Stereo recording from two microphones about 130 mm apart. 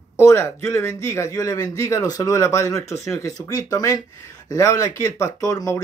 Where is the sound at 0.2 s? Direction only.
20° left (ahead or behind).